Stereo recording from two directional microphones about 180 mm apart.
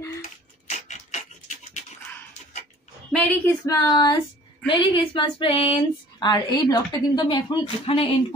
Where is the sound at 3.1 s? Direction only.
5° left (ahead or behind).